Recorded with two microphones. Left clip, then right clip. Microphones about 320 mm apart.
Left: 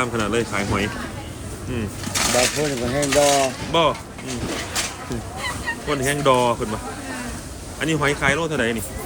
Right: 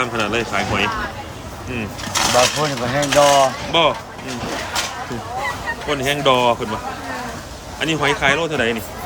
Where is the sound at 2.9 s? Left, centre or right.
Right.